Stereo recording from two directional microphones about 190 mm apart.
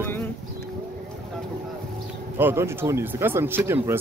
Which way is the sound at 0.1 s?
10° left (ahead or behind).